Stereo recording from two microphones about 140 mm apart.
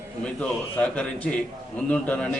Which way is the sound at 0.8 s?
10° left (ahead or behind).